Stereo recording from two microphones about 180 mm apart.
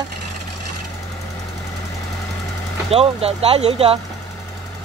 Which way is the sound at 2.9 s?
35° right (ahead or behind).